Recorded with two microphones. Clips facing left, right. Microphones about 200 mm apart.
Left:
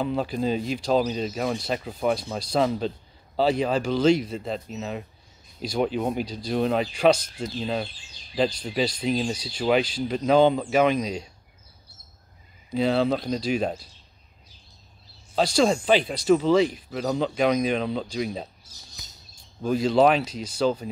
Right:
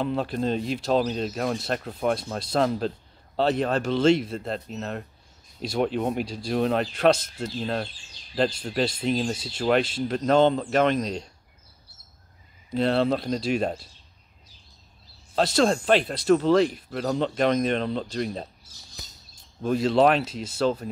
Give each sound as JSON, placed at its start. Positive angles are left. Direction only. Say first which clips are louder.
{"t": 0.0, "sound": "speech", "louder": "even", "side_deg": 0}
{"t": 12.7, "sound": "speech", "louder": "even", "side_deg": 0}
{"t": 15.3, "sound": "speech", "louder": "even", "side_deg": 0}
{"t": 19.6, "sound": "speech", "louder": "left 1 dB", "side_deg": 0}